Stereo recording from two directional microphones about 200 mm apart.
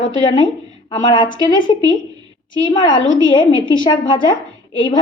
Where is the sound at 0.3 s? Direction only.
25° left (ahead or behind).